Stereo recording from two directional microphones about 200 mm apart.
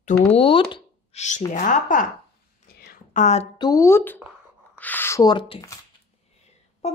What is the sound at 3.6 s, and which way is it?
Speech, 15° left (ahead or behind).